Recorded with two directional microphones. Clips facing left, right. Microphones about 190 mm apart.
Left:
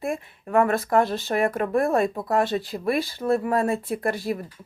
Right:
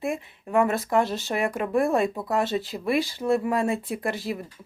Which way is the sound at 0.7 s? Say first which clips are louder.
Left 2 dB; 50° left (ahead or behind).